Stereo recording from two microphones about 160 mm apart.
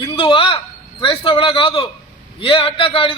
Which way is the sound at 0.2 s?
35° left (ahead or behind).